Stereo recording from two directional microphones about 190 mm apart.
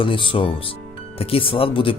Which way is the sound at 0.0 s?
25° left (ahead or behind).